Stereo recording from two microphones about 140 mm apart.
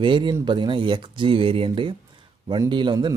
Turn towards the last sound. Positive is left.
turn(degrees=-35)  # may be behind; listen again after turning